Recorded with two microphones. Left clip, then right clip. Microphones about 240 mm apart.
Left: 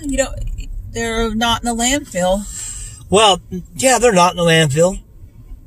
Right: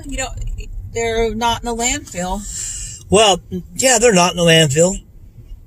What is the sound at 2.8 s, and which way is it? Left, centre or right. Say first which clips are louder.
A man's voice: left 1 dB; right.